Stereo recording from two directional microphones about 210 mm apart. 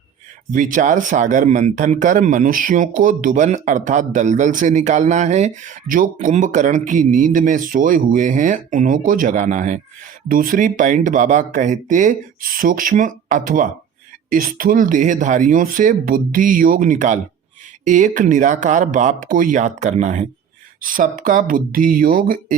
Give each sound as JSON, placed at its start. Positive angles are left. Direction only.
{"t": 0.5, "sound": "speech", "side_deg": -40}